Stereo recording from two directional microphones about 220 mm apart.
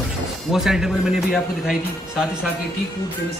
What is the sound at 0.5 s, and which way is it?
Speech, centre (ahead or behind).